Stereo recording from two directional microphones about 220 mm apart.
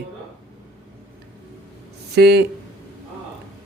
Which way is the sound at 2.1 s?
50° right (ahead or behind).